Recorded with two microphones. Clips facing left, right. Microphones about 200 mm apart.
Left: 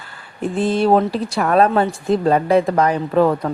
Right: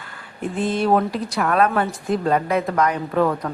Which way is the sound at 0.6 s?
30° left (ahead or behind).